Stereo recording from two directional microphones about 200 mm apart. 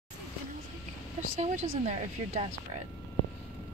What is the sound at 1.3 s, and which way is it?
Speech, 35° right (ahead or behind).